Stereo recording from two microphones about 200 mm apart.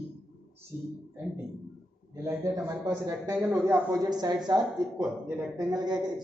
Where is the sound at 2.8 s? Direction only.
20° right (ahead or behind).